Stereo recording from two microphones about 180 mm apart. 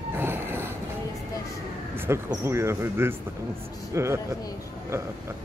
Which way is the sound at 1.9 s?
15° right (ahead or behind).